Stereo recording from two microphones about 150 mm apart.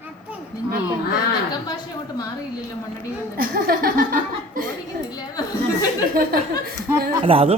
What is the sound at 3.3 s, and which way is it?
Laughter, 75° right (ahead or behind).